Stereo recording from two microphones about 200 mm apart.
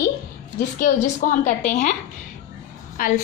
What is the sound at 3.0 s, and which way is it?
Speech, 45° left (ahead or behind).